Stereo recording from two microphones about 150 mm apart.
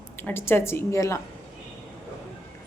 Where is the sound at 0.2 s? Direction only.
15° left (ahead or behind).